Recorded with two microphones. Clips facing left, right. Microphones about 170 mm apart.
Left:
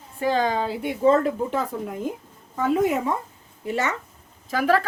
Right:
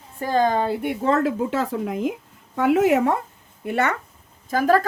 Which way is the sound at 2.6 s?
75° right (ahead or behind).